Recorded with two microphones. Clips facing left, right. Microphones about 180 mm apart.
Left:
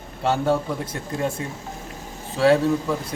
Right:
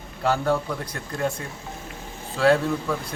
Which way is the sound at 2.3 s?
25° left (ahead or behind).